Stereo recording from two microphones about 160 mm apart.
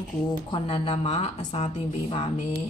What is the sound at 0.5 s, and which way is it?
Speech, 30° left (ahead or behind).